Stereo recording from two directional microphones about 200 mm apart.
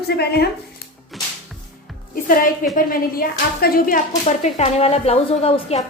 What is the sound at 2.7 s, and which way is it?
A woman's voice, 45° left (ahead or behind).